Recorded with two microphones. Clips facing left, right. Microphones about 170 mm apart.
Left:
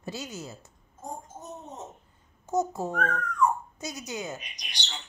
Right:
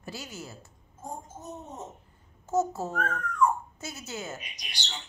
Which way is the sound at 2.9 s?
5° right (ahead or behind).